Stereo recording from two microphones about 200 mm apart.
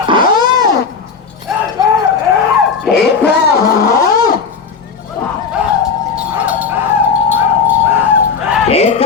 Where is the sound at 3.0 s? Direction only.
55° left (ahead or behind).